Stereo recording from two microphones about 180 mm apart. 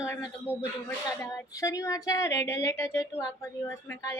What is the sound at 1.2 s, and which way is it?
Speech, 15° left (ahead or behind).